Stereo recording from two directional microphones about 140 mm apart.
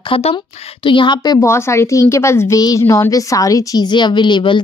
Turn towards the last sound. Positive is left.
turn(degrees=35)  # may be behind; listen again after turning